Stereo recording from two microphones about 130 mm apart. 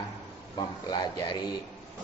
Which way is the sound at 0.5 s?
35° left (ahead or behind).